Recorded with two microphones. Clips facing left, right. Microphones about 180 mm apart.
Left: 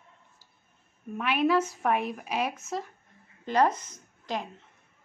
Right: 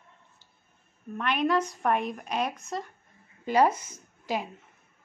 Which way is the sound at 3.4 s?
10° right (ahead or behind).